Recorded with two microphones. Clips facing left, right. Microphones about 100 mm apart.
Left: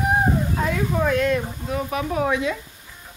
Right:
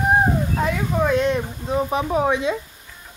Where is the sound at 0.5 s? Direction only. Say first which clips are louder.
Right 1 dB; 15° right (ahead or behind).